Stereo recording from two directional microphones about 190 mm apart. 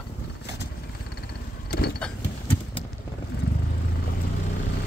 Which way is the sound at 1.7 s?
55° left (ahead or behind).